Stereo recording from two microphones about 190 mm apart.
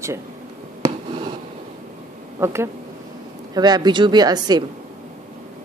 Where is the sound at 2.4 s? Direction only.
15° right (ahead or behind).